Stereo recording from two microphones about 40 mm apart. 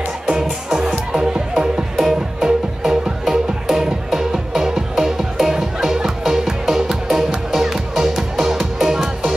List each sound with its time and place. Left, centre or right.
0.3 s music: centre